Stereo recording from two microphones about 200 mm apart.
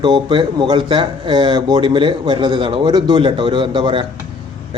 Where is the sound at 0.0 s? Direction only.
20° right (ahead or behind).